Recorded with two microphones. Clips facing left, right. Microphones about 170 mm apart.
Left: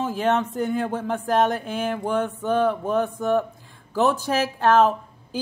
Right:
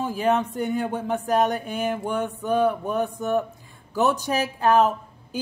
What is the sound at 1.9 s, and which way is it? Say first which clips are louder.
Speech: left 2 dB; 15° right (ahead or behind).